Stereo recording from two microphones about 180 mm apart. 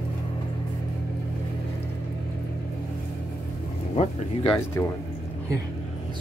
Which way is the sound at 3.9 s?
35° left (ahead or behind).